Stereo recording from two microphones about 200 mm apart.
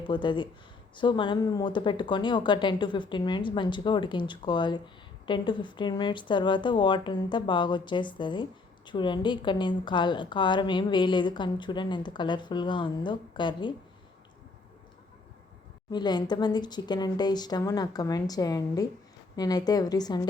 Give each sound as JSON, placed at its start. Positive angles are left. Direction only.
{"t": 0.0, "sound": "a woman's voice", "side_deg": 25}
{"t": 15.9, "sound": "a woman's voice", "side_deg": 20}